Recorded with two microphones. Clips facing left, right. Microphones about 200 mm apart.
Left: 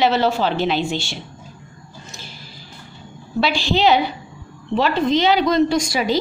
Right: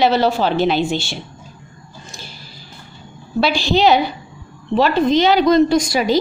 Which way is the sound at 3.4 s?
40° right (ahead or behind).